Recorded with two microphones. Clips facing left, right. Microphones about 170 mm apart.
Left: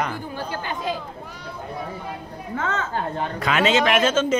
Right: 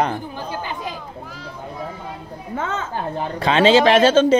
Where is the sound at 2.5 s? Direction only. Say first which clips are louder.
Right 1 dB; 20° right (ahead or behind).